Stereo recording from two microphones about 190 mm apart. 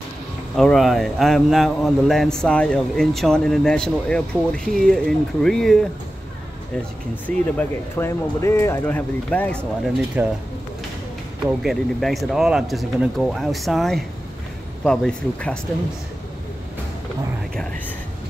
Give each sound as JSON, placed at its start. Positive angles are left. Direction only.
{"t": 0.6, "sound": "a man's voice", "side_deg": 0}
{"t": 7.2, "sound": "speech", "side_deg": 10}
{"t": 10.2, "sound": "speech", "side_deg": -10}
{"t": 11.6, "sound": "a man's voice", "side_deg": 0}